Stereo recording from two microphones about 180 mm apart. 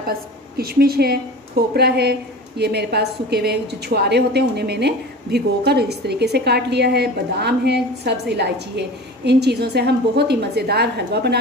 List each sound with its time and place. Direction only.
0.6 s a woman's voice: 55° right (ahead or behind)